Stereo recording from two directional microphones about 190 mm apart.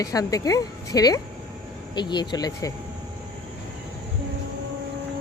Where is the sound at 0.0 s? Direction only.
20° left (ahead or behind).